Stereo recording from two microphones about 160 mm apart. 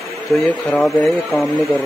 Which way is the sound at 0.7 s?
Centre (ahead or behind).